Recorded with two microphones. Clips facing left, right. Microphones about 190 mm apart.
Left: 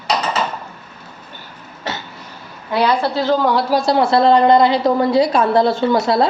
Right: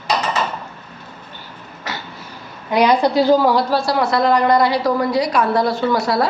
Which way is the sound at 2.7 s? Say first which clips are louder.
Right 2 dB; 15° right (ahead or behind).